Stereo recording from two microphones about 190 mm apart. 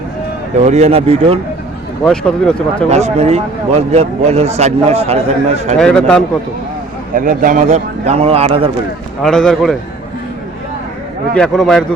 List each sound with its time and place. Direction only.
0.5 s speech: 35° right (ahead or behind)
2.0 s speech: 5° left (ahead or behind)
2.9 s speech: 35° right (ahead or behind)
5.8 s speech: 5° left (ahead or behind)
7.2 s speech: 45° right (ahead or behind); by 8.7 s 30° right (ahead or behind)
9.2 s speech: 5° left (ahead or behind)
11.3 s speech: 5° left (ahead or behind)